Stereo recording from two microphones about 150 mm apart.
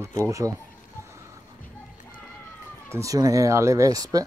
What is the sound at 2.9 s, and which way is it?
Speech, 20° right (ahead or behind).